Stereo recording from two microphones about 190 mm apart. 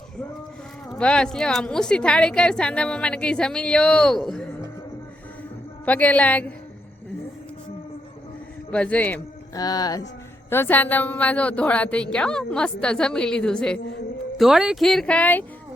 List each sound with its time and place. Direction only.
0.9 s a woman's voice: 5° left (ahead or behind)
5.8 s a woman's voice: 10° left (ahead or behind)
8.7 s a woman's voice: 5° left (ahead or behind)
9.6 s a woman's voice: 20° left (ahead or behind)